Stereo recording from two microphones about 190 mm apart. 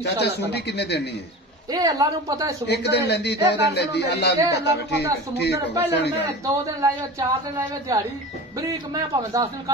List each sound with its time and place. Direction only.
0.0 s speech: 60° left (ahead or behind)
1.7 s speech: 20° right (ahead or behind)
2.6 s speech: 60° left (ahead or behind)
6.4 s a man's voice: 15° right (ahead or behind)